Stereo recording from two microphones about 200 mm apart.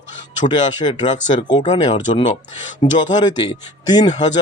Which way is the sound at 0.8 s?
30° left (ahead or behind).